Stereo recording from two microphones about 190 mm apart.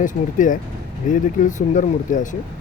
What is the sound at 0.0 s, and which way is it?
Speech, 40° left (ahead or behind).